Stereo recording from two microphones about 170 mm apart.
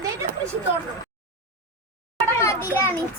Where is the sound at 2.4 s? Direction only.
15° left (ahead or behind).